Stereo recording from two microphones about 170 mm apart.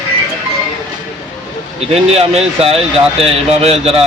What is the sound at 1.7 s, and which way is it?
Speech, 35° right (ahead or behind).